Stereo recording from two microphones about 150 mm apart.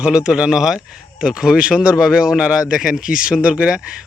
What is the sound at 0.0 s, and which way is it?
Speech, 5° right (ahead or behind).